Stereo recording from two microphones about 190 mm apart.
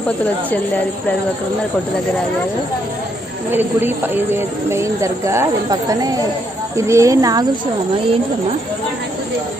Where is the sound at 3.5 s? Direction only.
10° right (ahead or behind).